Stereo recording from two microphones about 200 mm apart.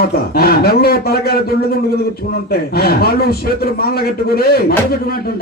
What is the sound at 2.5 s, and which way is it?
A man's voice, 50° left (ahead or behind).